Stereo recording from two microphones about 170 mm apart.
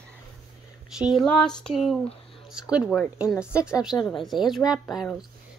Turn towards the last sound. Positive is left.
turn(degrees=0)  # may be behind; listen again after turning